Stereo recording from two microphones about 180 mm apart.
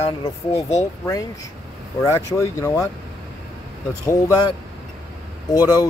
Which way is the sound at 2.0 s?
15° left (ahead or behind).